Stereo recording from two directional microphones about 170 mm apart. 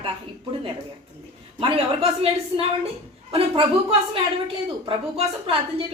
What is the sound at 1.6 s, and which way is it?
A woman's voice, 35° right (ahead or behind).